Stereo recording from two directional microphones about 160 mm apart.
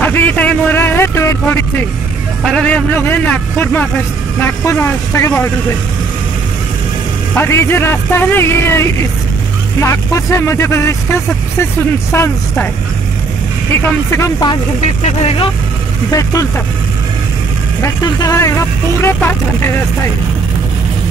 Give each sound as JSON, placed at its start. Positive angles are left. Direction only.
{"t": 0.0, "sound": "a sound", "side_deg": 10}
{"t": 2.4, "sound": "speech", "side_deg": 5}
{"t": 7.3, "sound": "speech", "side_deg": 15}
{"t": 14.1, "sound": "speech", "side_deg": 20}
{"t": 15.0, "sound": "speech", "side_deg": 35}
{"t": 16.1, "sound": "speech", "side_deg": 20}
{"t": 17.8, "sound": "speech", "side_deg": 20}